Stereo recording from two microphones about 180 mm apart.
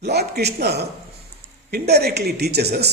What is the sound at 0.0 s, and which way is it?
A man's voice, 65° right (ahead or behind).